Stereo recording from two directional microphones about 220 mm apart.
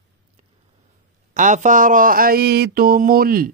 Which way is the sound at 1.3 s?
35° right (ahead or behind).